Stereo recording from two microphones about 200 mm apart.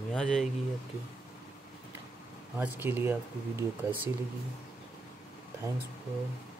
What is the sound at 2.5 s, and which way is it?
Speech, 10° right (ahead or behind).